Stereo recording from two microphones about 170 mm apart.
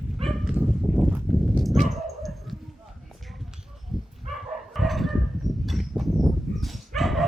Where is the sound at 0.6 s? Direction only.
Centre (ahead or behind).